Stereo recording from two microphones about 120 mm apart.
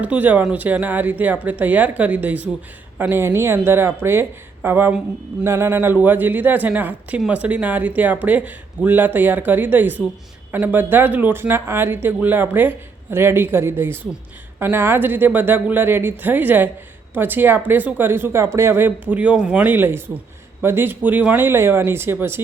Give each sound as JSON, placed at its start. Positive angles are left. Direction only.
{"t": 0.0, "sound": "speech", "side_deg": -10}